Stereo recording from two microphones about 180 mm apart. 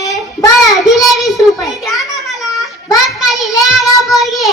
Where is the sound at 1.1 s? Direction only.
Centre (ahead or behind).